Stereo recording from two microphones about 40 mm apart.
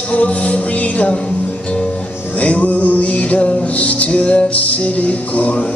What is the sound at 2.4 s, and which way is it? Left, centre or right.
Music, left.